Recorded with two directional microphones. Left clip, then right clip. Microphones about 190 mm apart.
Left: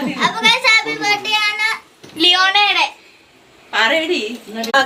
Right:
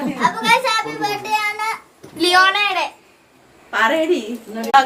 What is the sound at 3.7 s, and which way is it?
Speech, 35° right (ahead or behind).